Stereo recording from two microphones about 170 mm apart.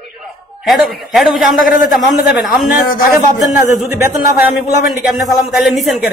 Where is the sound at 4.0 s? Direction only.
10° right (ahead or behind).